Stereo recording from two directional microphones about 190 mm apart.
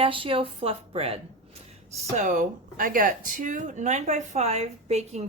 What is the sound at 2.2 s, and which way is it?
Speech, 40° right (ahead or behind).